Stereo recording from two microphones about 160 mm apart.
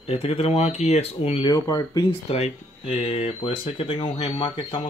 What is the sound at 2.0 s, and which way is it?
Speech, 40° left (ahead or behind).